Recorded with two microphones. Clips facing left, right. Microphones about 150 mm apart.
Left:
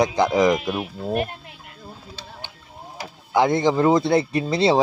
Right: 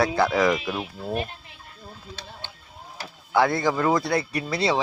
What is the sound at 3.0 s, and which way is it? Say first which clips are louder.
Speech: left 2 dB; 20° left (ahead or behind).